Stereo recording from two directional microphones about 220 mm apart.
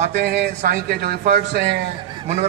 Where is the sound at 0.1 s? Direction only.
50° right (ahead or behind).